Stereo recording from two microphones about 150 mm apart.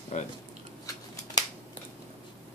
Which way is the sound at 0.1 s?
55° left (ahead or behind).